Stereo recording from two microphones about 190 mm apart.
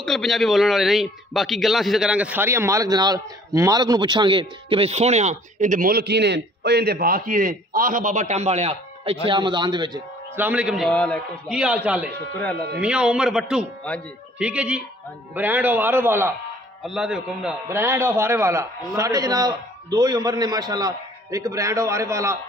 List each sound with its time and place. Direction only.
0.0 s a man's voice: centre (ahead or behind); by 10.0 s 20° right (ahead or behind)
10.3 s a man's voice: 10° right (ahead or behind)